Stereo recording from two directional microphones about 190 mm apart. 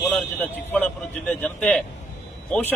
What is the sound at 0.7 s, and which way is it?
A man's voice, 5° left (ahead or behind).